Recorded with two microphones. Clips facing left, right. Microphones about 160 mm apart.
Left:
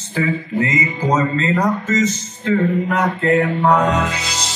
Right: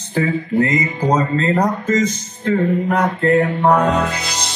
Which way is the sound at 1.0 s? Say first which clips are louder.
Right 1 dB; 35° right (ahead or behind).